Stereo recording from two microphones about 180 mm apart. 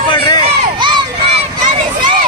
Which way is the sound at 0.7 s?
25° right (ahead or behind).